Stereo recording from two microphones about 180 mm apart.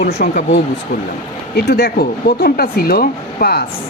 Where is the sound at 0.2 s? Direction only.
50° left (ahead or behind).